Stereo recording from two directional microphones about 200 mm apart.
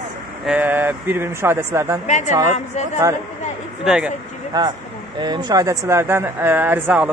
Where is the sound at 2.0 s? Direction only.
35° left (ahead or behind).